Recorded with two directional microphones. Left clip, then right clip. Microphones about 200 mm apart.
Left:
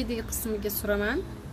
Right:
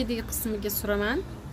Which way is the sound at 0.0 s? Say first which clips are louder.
Right 1 dB; 10° right (ahead or behind).